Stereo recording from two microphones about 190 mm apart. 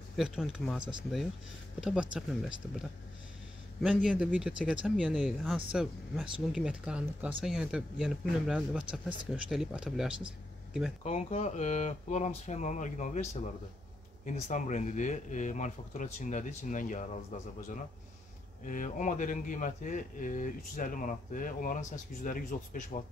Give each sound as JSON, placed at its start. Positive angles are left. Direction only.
{"t": 0.1, "sound": "speech", "side_deg": 0}
{"t": 3.8, "sound": "speech", "side_deg": -5}
{"t": 11.1, "sound": "speech", "side_deg": 35}
{"t": 18.7, "sound": "speech", "side_deg": 40}